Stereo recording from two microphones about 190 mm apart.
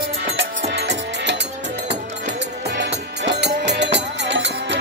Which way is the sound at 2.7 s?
65° right (ahead or behind).